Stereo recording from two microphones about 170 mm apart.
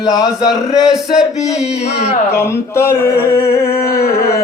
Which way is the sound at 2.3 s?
15° left (ahead or behind).